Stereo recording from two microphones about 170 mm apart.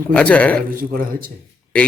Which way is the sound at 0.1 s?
5° left (ahead or behind).